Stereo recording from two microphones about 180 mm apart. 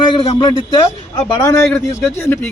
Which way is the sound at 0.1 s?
30° left (ahead or behind).